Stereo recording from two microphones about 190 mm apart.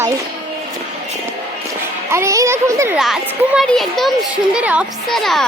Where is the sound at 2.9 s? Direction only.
Centre (ahead or behind).